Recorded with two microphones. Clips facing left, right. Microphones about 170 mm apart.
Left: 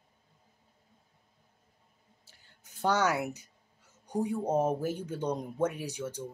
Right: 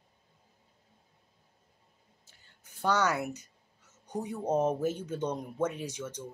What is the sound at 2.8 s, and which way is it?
Speech, 10° left (ahead or behind).